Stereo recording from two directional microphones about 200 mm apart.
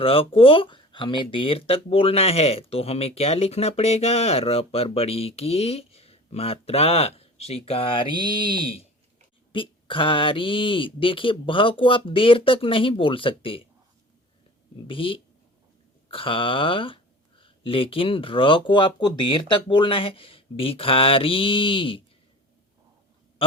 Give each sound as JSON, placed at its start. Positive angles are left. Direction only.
{"t": 0.0, "sound": "speech", "side_deg": 25}
{"t": 14.8, "sound": "speech", "side_deg": 25}